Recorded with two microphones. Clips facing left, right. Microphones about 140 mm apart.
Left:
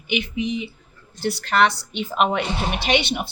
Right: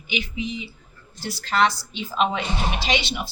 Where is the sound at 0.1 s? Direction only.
60° left (ahead or behind).